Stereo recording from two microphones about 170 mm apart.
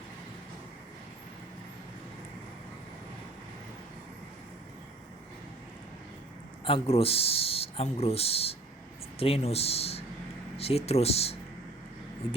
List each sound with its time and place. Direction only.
6.7 s a man's voice: 35° left (ahead or behind)